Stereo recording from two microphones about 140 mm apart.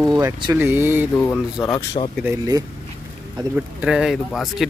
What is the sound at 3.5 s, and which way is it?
Speech, 5° right (ahead or behind).